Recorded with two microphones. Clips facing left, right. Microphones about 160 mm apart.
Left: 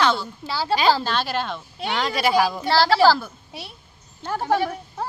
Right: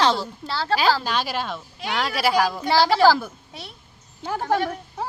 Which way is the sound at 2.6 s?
15° right (ahead or behind).